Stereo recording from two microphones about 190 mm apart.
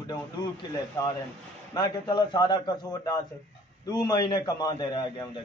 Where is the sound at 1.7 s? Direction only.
20° left (ahead or behind).